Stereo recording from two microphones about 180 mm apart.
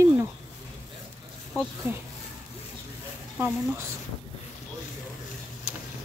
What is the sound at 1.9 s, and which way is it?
Speech, 15° right (ahead or behind).